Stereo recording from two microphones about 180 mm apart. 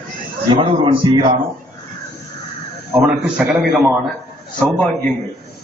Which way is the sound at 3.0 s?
5° right (ahead or behind).